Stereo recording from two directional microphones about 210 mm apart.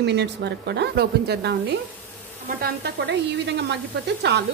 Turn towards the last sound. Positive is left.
turn(degrees=-55)  # may be behind; listen again after turning